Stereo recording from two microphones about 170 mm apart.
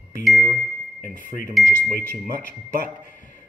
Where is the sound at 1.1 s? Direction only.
50° left (ahead or behind).